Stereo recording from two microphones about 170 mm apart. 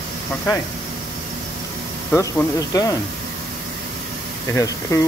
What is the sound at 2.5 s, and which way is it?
Speech, 20° left (ahead or behind).